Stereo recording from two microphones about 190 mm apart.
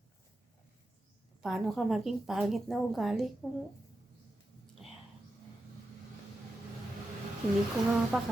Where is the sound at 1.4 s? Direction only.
Centre (ahead or behind).